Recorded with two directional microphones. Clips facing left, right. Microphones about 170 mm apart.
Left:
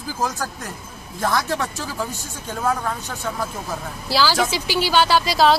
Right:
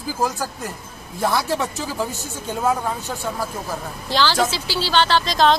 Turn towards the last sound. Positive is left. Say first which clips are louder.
# left 1 dB
turn(degrees=10)  # may be behind; listen again after turning